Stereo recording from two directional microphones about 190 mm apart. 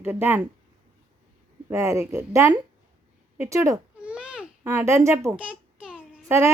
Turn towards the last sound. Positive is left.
turn(degrees=-10)  # may be behind; listen again after turning